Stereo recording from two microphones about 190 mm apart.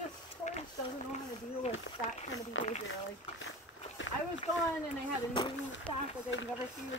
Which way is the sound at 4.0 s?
85° left.